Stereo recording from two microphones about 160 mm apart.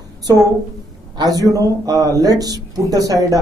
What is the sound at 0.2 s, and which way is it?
A woman's voice, 20° right (ahead or behind).